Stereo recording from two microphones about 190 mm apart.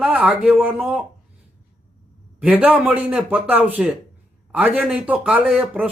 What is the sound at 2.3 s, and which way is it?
Speech, 10° right (ahead or behind).